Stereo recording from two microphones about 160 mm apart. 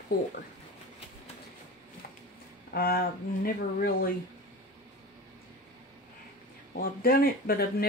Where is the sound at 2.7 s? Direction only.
70° left (ahead or behind).